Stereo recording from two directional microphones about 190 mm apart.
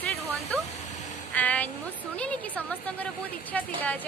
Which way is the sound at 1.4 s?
5° left (ahead or behind).